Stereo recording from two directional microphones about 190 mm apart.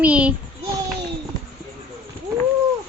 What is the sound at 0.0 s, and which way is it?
Speech, 5° right (ahead or behind).